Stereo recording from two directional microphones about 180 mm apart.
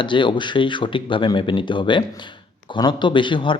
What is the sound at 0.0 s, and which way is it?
A man's voice, 25° left (ahead or behind).